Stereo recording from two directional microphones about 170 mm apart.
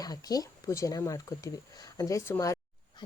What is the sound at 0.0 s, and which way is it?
Speech, 20° left (ahead or behind).